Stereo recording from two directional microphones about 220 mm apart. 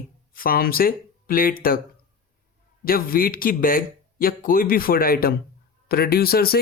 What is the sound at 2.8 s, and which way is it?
Speech, 40° left (ahead or behind).